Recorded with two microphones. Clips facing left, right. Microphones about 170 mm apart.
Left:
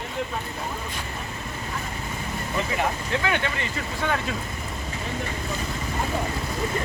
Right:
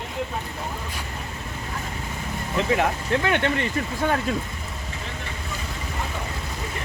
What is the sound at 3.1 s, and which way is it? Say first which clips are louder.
Speech: right 3 dB; 55° right (ahead or behind).